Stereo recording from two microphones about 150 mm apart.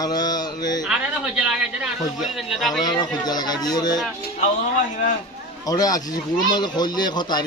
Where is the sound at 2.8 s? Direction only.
25° left (ahead or behind).